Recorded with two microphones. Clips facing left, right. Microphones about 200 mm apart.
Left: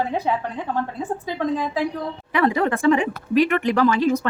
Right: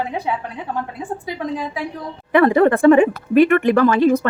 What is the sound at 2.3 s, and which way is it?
Speech, 50° right (ahead or behind).